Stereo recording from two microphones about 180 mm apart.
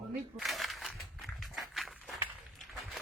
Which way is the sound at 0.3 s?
Centre (ahead or behind).